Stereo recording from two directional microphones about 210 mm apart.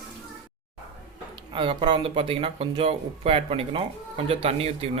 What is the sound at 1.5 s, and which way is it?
Speech, 25° right (ahead or behind).